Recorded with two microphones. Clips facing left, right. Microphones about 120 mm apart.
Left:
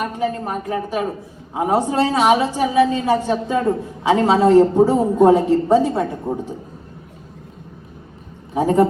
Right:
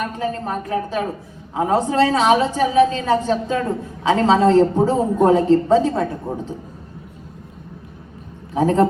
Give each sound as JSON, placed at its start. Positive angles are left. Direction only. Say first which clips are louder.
{"t": 0.0, "sound": "a woman's voice", "louder": "left 2 dB", "side_deg": 15}
{"t": 8.5, "sound": "a woman's voice", "louder": "left 1 dB", "side_deg": 15}